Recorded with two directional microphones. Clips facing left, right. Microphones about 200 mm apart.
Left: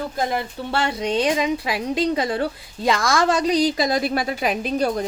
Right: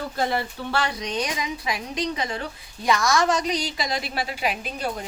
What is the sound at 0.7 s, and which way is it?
A woman's voice, 25° left (ahead or behind).